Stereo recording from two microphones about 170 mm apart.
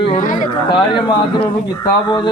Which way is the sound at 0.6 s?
30° left (ahead or behind).